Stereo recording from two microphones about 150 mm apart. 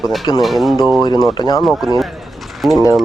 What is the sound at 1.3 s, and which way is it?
Speech, 30° left (ahead or behind).